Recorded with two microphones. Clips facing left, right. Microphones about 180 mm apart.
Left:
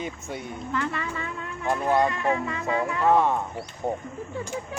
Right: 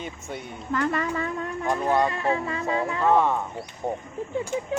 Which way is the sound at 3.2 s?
10° left (ahead or behind).